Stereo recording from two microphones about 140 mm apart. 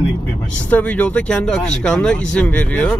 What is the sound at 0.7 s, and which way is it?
Speech, 10° left (ahead or behind).